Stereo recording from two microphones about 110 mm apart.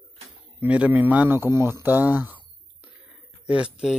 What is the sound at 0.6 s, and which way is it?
Speech, 15° right (ahead or behind).